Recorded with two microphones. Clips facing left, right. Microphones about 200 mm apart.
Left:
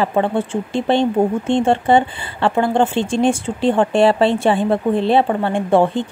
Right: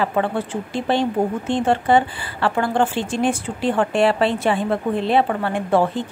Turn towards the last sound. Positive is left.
turn(degrees=25)  # may be behind; listen again after turning